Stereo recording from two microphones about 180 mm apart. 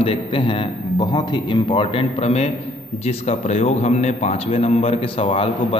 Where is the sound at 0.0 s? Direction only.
30° left (ahead or behind).